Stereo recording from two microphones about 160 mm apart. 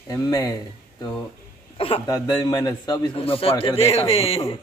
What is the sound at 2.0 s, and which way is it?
Speech, 20° left (ahead or behind).